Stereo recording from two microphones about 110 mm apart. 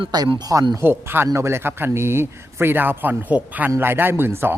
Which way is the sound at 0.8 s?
20° right (ahead or behind).